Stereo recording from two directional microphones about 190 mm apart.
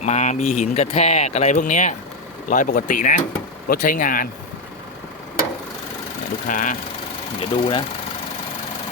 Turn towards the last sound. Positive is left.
turn(degrees=30)  # may be behind; listen again after turning